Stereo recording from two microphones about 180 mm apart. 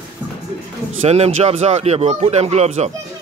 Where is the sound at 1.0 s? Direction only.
35° right (ahead or behind).